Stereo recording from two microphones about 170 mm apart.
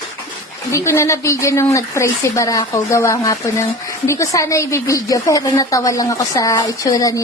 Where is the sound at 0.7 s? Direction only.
15° left (ahead or behind).